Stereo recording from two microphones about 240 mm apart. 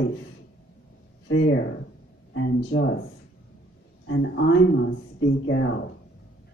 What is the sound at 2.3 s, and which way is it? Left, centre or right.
Speech, left.